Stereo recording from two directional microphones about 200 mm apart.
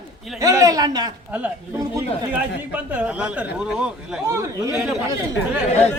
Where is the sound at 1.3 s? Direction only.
5° right (ahead or behind).